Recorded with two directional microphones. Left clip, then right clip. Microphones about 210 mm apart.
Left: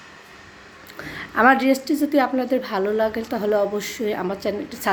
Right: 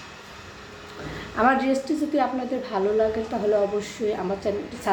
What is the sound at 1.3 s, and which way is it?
A woman's voice, 50° left (ahead or behind).